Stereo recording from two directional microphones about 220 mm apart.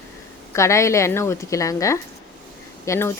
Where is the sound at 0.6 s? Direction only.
15° left (ahead or behind).